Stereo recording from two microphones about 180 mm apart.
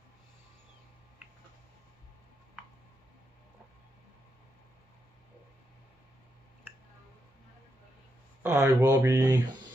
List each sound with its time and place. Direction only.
8.4 s speech: 10° right (ahead or behind)